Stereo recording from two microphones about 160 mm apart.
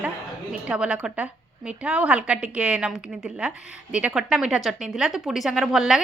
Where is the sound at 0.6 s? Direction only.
5° right (ahead or behind).